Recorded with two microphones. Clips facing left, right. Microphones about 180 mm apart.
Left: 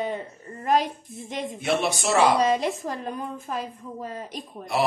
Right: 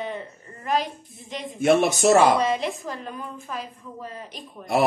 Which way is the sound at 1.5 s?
45° right (ahead or behind).